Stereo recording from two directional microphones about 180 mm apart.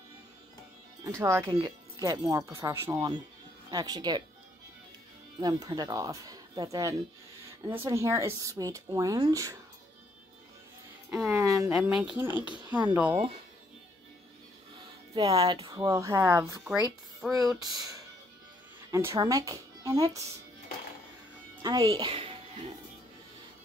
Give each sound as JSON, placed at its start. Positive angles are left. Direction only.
{"t": 1.0, "sound": "speech", "side_deg": -15}
{"t": 5.4, "sound": "speech", "side_deg": -20}
{"t": 11.1, "sound": "music", "side_deg": -5}
{"t": 11.3, "sound": "a sound", "side_deg": -20}
{"t": 11.7, "sound": "speech", "side_deg": -5}
{"t": 15.1, "sound": "speech", "side_deg": -30}
{"t": 15.7, "sound": "speech", "side_deg": -20}
{"t": 21.6, "sound": "speech", "side_deg": -25}